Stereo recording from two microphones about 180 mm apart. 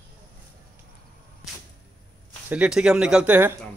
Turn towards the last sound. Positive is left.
turn(degrees=-10)  # may be behind; listen again after turning